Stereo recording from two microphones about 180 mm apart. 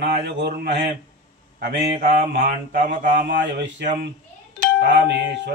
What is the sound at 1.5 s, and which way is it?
Mantra, 55° right (ahead or behind).